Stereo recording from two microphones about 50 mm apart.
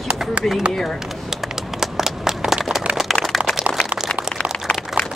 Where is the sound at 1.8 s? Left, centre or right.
Centre.